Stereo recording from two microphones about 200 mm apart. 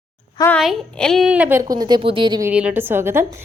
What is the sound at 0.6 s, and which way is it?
A woman's voice, centre (ahead or behind).